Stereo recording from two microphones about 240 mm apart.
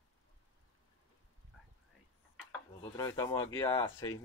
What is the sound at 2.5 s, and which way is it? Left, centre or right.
Dishes, centre.